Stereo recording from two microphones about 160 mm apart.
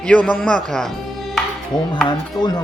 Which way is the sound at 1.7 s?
30° left (ahead or behind).